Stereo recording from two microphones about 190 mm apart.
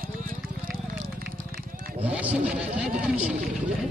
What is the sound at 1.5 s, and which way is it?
Wild animals, 50° right (ahead or behind).